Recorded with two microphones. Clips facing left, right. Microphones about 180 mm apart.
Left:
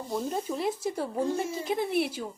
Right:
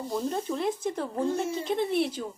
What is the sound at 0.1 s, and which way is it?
Speech, 5° left (ahead or behind).